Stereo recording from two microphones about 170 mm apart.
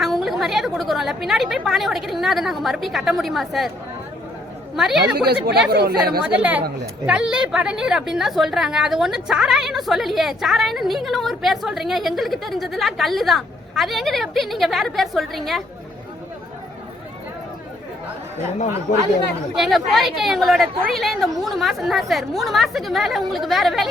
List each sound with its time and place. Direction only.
0.0 s a woman's voice: centre (ahead or behind)
4.8 s a woman's voice: centre (ahead or behind)
5.1 s speech: 70° right (ahead or behind)
7.0 s a woman's voice: 5° right (ahead or behind)
18.9 s speech: 50° left (ahead or behind)
19.5 s a woman's voice: centre (ahead or behind)